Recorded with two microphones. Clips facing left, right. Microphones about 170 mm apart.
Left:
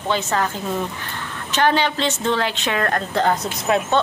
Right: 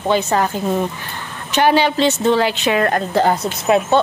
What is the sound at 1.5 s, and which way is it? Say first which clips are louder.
A woman's voice: right 4 dB; 10° right (ahead or behind).